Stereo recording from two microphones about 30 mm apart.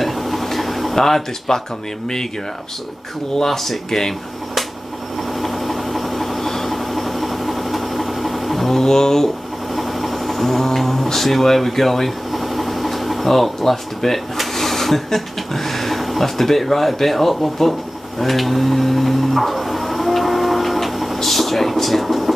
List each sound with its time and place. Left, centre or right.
0.0 s a sound: centre
0.9 s speech: centre
3.3 s speech: centre
5.4 s vehicle: centre
8.8 s speech: centre
9.8 s a sound: centre